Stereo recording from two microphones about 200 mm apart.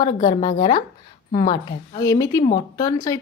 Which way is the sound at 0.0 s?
25° left (ahead or behind).